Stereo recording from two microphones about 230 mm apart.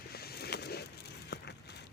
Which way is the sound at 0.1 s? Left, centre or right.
Left.